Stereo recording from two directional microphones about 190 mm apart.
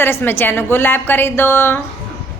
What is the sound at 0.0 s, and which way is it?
A woman's voice, 10° left (ahead or behind).